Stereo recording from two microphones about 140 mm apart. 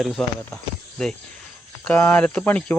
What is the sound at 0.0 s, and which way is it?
Speech, 5° left (ahead or behind).